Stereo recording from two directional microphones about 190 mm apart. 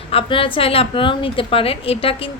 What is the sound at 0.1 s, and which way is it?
A woman's voice, 30° left (ahead or behind).